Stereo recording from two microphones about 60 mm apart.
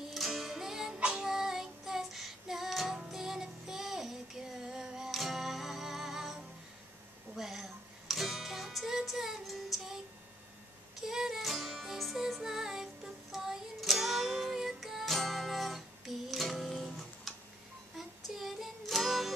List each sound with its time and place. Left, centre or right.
0.1 s music: centre
0.9 s music: centre
1.2 s child singing: centre
7.3 s music: centre
11.0 s music: centre